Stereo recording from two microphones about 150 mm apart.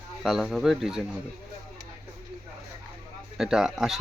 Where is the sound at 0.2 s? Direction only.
Centre (ahead or behind).